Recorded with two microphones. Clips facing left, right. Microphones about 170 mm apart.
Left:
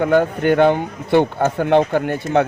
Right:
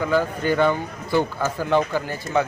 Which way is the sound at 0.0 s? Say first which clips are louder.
Left 6 dB; 60° left (ahead or behind).